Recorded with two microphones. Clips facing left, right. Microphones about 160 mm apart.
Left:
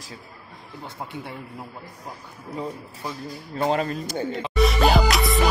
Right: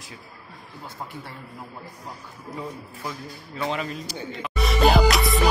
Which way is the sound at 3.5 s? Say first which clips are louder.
Left 5 dB; 45° left (ahead or behind).